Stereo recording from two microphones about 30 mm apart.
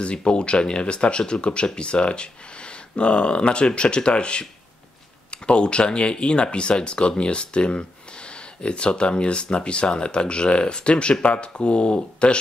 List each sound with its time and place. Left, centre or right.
0.0 s speech: left